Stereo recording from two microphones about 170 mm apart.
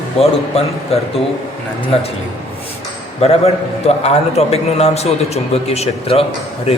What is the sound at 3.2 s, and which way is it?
A man's voice, 35° left (ahead or behind).